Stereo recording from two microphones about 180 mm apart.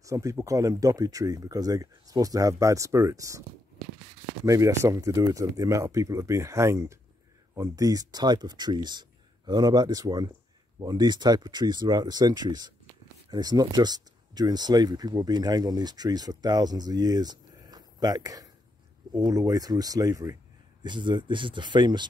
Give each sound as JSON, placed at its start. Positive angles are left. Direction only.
{"t": 0.0, "sound": "speech", "side_deg": -15}
{"t": 4.5, "sound": "speech", "side_deg": -15}